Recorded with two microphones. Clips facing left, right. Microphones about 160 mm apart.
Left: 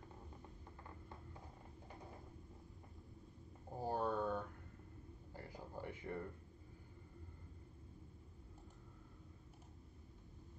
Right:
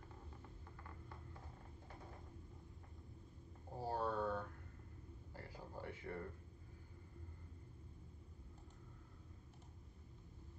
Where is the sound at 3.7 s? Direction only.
15° left (ahead or behind).